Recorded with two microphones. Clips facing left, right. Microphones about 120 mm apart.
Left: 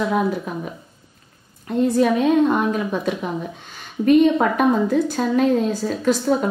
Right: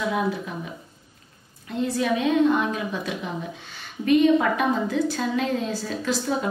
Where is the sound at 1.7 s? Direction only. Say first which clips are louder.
Left 7 dB; 45° left (ahead or behind).